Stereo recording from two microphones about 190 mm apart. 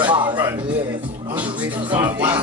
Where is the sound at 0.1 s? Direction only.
25° right (ahead or behind).